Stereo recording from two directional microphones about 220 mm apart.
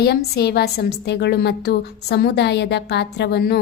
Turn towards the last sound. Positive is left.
turn(degrees=50)  # may be behind; listen again after turning